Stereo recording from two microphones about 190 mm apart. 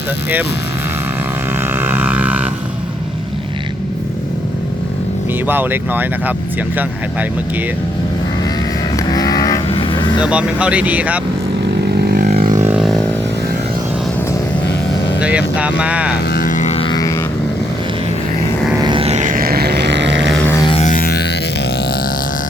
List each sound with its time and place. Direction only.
1.8 s vehicle: 10° right (ahead or behind)
5.5 s speech: 10° right (ahead or behind)
9.0 s cattle: 20° left (ahead or behind)
9.6 s vehicle: 30° left (ahead or behind)
10.2 s speech: 5° right (ahead or behind)
11.9 s vehicle: 50° right (ahead or behind)
12.5 s a sound: 15° right (ahead or behind)
12.7 s vehicle: centre (ahead or behind)
15.8 s speech: 5° right (ahead or behind)
16.3 s music: 45° left (ahead or behind); by 17.2 s 20° left (ahead or behind)
18.8 s music: 25° right (ahead or behind); by 20.3 s 70° right (ahead or behind)
20.4 s music: 15° left (ahead or behind)
20.7 s music: 30° left (ahead or behind)
20.9 s music: 55° left (ahead or behind)